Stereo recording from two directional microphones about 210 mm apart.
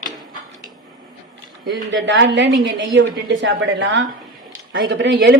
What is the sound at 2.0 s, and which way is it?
Speech, 60° right (ahead or behind).